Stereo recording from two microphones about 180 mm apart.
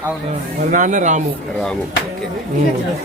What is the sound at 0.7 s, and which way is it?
Speech, 45° right (ahead or behind).